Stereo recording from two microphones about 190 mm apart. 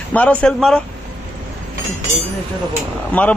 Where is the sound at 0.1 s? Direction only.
5° left (ahead or behind).